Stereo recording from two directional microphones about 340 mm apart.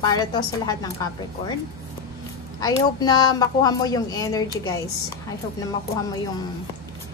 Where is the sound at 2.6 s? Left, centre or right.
Centre.